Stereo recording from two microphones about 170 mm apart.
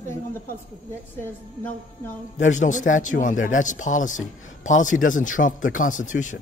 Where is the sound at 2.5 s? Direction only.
50° left (ahead or behind).